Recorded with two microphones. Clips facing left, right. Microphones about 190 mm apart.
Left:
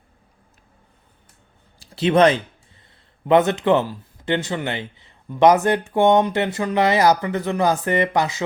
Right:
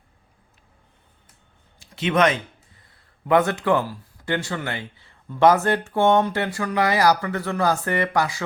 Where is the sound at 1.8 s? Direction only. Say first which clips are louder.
Left 5 dB; 35° left (ahead or behind).